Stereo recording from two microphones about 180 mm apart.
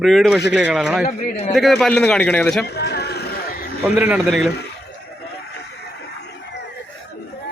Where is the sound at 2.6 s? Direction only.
65° left (ahead or behind).